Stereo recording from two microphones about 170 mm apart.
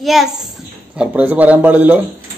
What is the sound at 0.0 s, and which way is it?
A child's voice, centre (ahead or behind).